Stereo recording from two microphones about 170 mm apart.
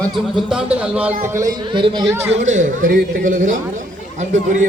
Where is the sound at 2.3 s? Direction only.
45° right (ahead or behind).